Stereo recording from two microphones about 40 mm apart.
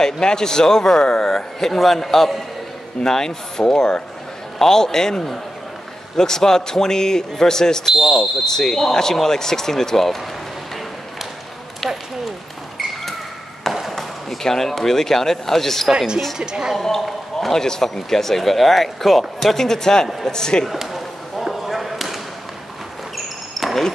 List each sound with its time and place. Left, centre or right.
0.0 s speech: centre
7.9 s speech: centre
8.5 s speech: centre
13.9 s speech: centre
16.3 s a woman's voice: centre
17.0 s speech: centre
20.6 s basketball bounce: centre